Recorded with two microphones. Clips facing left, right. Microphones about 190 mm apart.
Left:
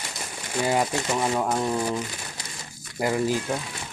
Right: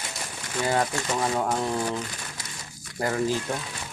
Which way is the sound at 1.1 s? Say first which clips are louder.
Left 1 dB; 5° left (ahead or behind).